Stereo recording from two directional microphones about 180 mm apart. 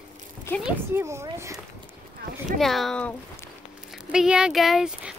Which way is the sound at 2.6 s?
Centre (ahead or behind).